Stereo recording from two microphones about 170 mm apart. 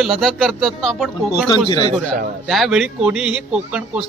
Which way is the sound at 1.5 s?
25° left (ahead or behind).